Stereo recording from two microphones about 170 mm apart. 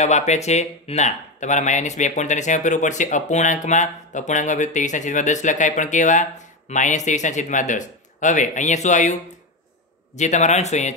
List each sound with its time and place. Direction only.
0.0 s speech: 40° left (ahead or behind)
10.1 s speech: 45° left (ahead or behind)